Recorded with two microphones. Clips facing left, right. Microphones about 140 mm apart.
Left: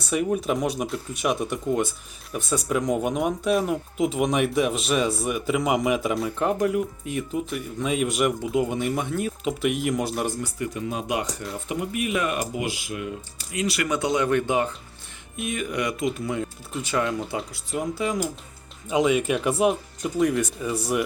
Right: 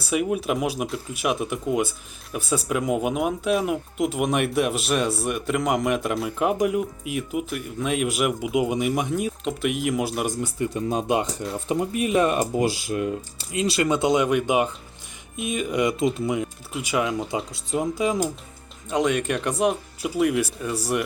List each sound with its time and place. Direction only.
0.1 s speech: 5° right (ahead or behind)
7.1 s speech: 5° right (ahead or behind)
8.5 s speech: 15° right (ahead or behind)
9.4 s speech: centre (ahead or behind)
10.3 s speech: 25° right (ahead or behind)
16.3 s speech: 10° right (ahead or behind)
17.5 s speech: 25° right (ahead or behind)
18.9 s speech: 5° left (ahead or behind)